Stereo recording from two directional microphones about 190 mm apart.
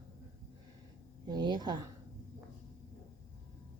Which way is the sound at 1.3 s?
20° right (ahead or behind).